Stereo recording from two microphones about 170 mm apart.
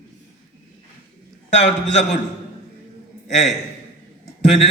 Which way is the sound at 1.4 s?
40° left (ahead or behind).